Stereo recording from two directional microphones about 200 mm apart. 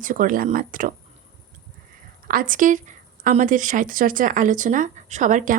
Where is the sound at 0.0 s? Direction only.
40° right (ahead or behind).